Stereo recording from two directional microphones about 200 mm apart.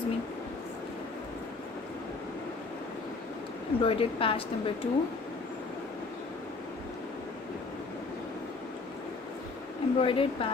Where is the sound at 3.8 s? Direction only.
30° left (ahead or behind).